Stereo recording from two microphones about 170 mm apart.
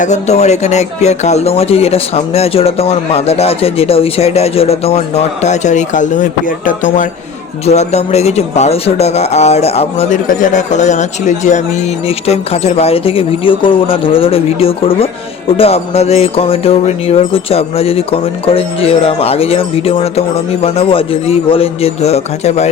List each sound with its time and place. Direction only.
0.0 s music: 40° left (ahead or behind)
6.7 s speech: 50° left (ahead or behind)
7.6 s music: 40° left (ahead or behind)
10.2 s speech: 50° left (ahead or behind)
12.0 s music: 35° left (ahead or behind)